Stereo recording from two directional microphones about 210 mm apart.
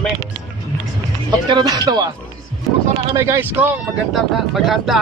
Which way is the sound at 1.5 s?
20° right (ahead or behind).